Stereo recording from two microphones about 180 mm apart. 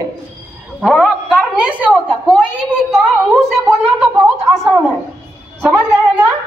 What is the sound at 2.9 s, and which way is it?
Speech, centre (ahead or behind).